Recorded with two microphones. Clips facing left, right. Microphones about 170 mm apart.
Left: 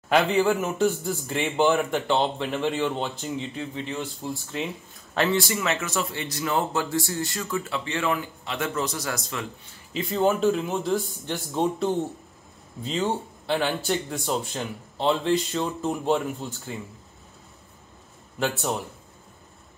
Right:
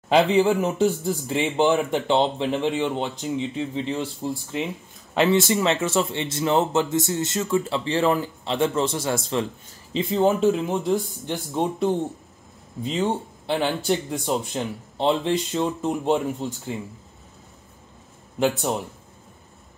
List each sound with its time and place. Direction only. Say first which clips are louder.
0.1 s speech: right 3 dB; 25° right (ahead or behind)
4.5 s speech: right 3 dB; 15° right (ahead or behind)
18.4 s speech: right 4 dB; 25° right (ahead or behind)